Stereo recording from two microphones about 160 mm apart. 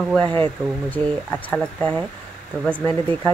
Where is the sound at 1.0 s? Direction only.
35° right (ahead or behind).